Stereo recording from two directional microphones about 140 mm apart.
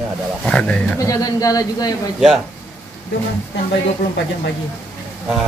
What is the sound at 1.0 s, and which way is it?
Speech, 25° left (ahead or behind).